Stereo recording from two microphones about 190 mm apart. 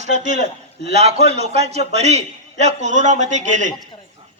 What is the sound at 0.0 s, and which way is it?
A man's voice, 40° right (ahead or behind).